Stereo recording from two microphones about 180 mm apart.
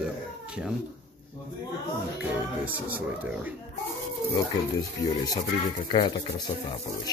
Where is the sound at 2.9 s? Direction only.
10° right (ahead or behind).